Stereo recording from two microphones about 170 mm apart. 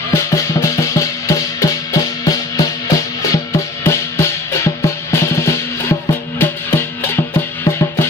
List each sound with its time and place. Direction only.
0.1 s music: 15° left (ahead or behind)